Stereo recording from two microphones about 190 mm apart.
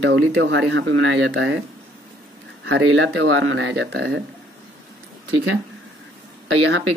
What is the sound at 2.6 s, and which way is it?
Speech, 90° right.